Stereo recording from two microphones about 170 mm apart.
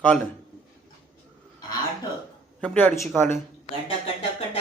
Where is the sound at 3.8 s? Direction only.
35° left (ahead or behind).